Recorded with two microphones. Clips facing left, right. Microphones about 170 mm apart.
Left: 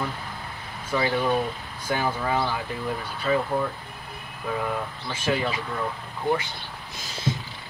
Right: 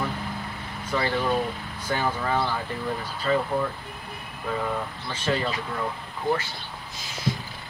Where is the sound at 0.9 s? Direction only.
5° left (ahead or behind).